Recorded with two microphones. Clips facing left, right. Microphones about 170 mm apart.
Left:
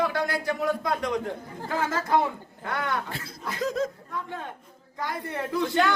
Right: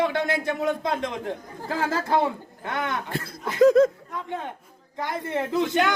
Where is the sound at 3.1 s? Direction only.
55° right (ahead or behind).